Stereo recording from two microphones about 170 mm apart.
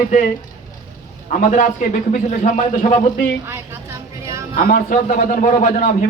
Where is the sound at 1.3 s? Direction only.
50° left (ahead or behind).